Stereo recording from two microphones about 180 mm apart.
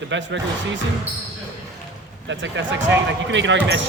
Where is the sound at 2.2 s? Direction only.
90° right.